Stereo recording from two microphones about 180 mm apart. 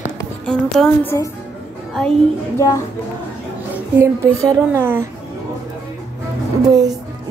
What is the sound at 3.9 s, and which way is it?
A child's voice, 15° right (ahead or behind).